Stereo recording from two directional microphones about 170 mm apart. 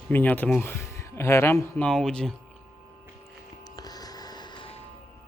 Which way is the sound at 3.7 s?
20° left (ahead or behind).